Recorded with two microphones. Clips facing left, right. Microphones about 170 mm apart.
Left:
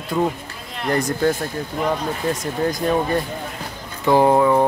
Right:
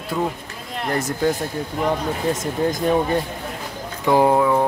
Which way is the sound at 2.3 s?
20° right (ahead or behind).